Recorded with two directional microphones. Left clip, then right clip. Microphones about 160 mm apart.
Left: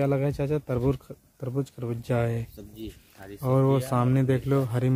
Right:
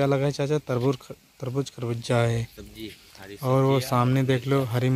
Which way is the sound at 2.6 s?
35° left (ahead or behind).